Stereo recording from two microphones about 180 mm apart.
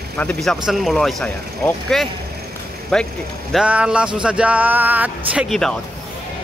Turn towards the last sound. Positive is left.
turn(degrees=0)  # may be behind; listen again after turning